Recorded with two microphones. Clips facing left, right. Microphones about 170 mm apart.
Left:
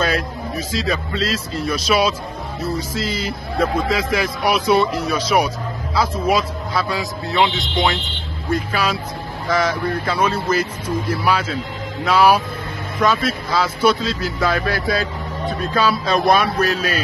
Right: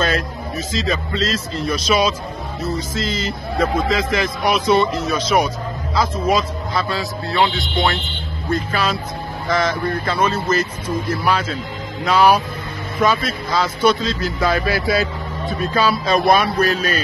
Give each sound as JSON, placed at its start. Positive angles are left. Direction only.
{"t": 0.7, "sound": "speech", "side_deg": 10}
{"t": 7.0, "sound": "speech", "side_deg": 20}